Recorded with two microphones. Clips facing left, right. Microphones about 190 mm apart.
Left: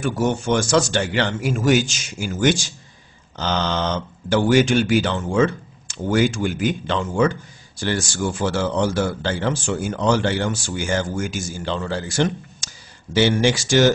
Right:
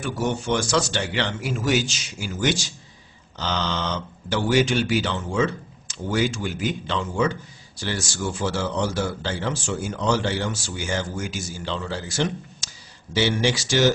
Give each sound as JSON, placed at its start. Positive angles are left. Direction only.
{"t": 0.0, "sound": "speech", "side_deg": 50}